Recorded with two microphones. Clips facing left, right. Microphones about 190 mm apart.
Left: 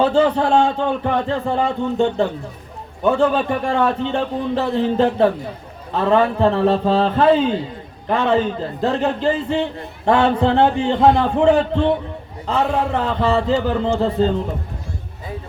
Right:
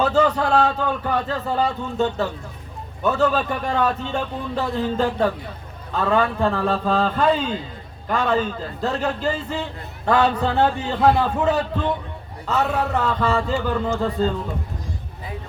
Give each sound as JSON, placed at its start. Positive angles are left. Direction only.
{"t": 0.0, "sound": "a man's voice", "side_deg": 25}